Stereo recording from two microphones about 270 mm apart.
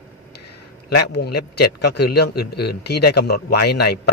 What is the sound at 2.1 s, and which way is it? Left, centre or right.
Speech, left.